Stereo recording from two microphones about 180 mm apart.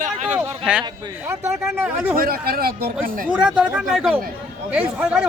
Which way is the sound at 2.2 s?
55° right (ahead or behind).